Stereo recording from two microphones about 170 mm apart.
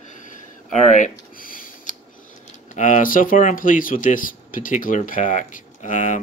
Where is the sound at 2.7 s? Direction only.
50° left (ahead or behind).